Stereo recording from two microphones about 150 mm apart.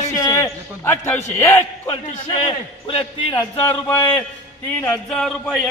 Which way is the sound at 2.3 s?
40° left (ahead or behind).